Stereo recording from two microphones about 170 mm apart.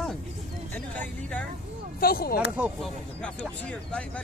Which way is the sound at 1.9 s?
60° left (ahead or behind).